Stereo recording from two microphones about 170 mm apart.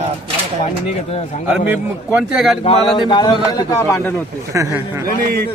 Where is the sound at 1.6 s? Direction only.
10° right (ahead or behind).